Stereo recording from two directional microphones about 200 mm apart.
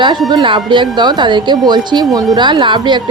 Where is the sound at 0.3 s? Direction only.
25° right (ahead or behind).